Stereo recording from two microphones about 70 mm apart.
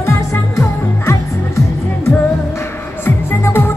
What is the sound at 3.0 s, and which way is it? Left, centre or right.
Music, left.